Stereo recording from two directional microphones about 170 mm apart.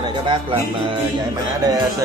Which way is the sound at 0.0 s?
30° right (ahead or behind).